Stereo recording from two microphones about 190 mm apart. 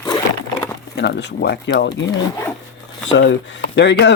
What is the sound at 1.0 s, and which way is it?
Speech, 60° left (ahead or behind).